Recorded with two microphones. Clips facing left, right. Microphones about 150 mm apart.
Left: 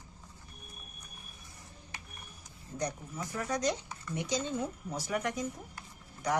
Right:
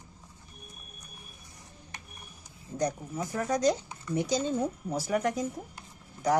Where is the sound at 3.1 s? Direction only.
30° right (ahead or behind).